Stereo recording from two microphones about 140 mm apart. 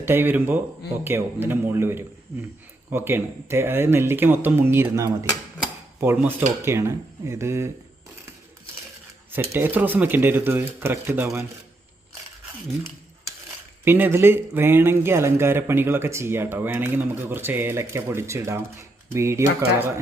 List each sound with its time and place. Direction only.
0.0 s speech: 15° right (ahead or behind)
9.3 s speech: 15° right (ahead or behind)
13.8 s speech: 15° right (ahead or behind)